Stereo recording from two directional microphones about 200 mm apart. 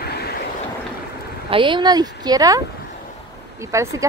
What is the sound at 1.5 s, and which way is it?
A woman's voice, 25° right (ahead or behind).